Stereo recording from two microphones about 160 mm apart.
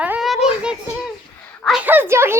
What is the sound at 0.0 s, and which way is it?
Children playing, 5° right (ahead or behind).